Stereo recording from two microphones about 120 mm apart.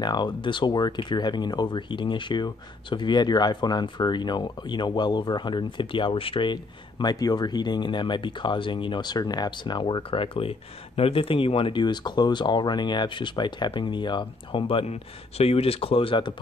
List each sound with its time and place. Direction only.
0.0 s speech: 40° left (ahead or behind)